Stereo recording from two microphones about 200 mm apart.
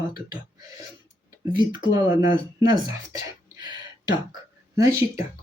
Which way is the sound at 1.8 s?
20° right (ahead or behind).